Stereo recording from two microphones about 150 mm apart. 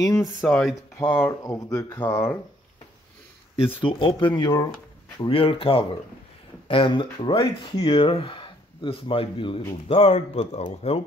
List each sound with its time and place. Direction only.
0.0 s speech: 20° left (ahead or behind)
0.4 s speech: centre (ahead or behind)
0.9 s speech: 15° left (ahead or behind)
3.8 s speech: 35° left (ahead or behind)
5.2 s speech: 35° left (ahead or behind)